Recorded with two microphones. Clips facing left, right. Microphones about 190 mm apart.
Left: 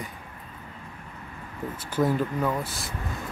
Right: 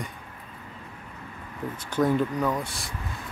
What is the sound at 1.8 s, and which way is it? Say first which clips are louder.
Speech: right 1 dB; 5° left (ahead or behind).